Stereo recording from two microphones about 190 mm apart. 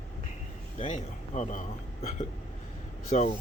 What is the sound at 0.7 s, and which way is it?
Speech, 40° left (ahead or behind).